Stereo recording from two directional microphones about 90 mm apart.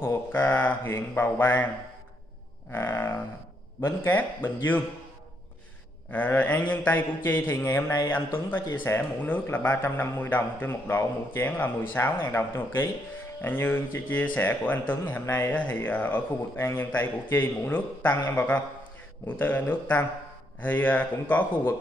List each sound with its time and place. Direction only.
0.0 s a man's voice: 25° left (ahead or behind)
2.7 s a man's voice: 25° left (ahead or behind)
6.1 s a man's voice: 20° left (ahead or behind)
15.5 s a man's voice: 15° left (ahead or behind)